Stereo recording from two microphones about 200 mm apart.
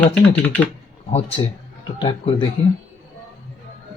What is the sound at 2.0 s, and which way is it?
Speech, 25° left (ahead or behind).